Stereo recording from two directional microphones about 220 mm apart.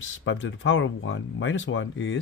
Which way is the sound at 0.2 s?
60° left (ahead or behind).